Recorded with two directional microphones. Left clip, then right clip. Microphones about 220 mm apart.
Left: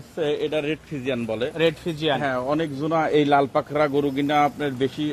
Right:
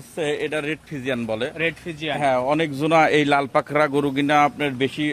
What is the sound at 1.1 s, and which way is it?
Speech, 45° right (ahead or behind).